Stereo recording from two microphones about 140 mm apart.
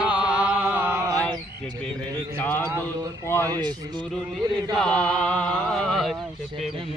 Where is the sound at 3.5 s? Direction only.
30° right (ahead or behind).